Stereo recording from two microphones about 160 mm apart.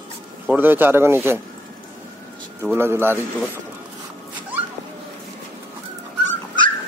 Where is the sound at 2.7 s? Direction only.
15° right (ahead or behind).